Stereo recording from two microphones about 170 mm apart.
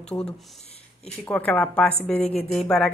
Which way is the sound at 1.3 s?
10° left (ahead or behind).